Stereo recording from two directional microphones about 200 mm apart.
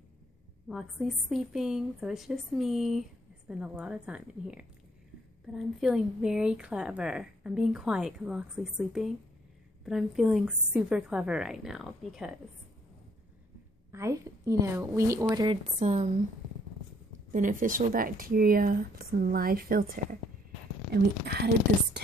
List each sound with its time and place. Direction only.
0.7 s a woman's voice: centre (ahead or behind)
13.9 s a woman's voice: 15° right (ahead or behind)
15.6 s a woman's voice: 35° right (ahead or behind)
17.3 s speech: 40° right (ahead or behind)